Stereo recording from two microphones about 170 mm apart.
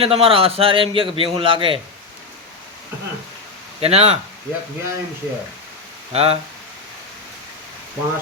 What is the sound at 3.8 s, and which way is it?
Speech, 35° right (ahead or behind).